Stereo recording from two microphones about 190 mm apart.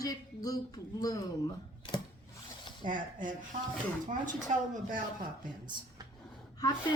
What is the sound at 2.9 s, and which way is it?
Speech, 45° right (ahead or behind).